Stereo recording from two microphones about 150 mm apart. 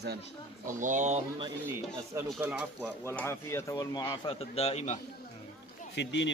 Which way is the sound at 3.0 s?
15° left (ahead or behind).